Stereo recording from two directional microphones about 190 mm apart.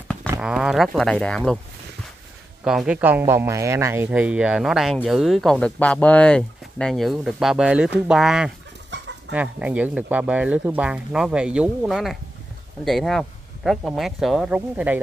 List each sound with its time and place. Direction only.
0.3 s speech: 5° right (ahead or behind)
2.6 s speech: 5° right (ahead or behind)
8.9 s chicken: 70° right (ahead or behind)
9.3 s speech: 5° right (ahead or behind)